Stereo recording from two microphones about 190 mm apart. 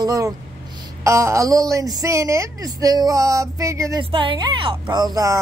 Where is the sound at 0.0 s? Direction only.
20° right (ahead or behind).